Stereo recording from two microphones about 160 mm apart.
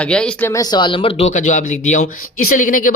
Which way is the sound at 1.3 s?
50° left (ahead or behind).